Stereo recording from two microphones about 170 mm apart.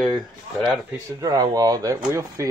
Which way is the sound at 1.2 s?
20° right (ahead or behind).